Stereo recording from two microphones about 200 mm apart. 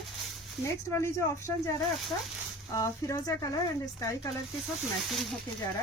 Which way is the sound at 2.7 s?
15° left (ahead or behind).